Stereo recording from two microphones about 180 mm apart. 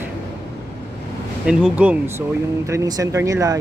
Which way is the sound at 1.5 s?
5° right (ahead or behind).